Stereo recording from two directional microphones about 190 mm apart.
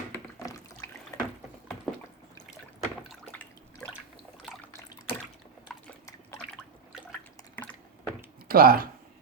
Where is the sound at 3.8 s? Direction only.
10° left (ahead or behind).